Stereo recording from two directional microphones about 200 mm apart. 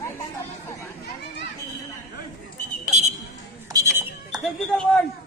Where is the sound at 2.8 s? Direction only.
35° right (ahead or behind).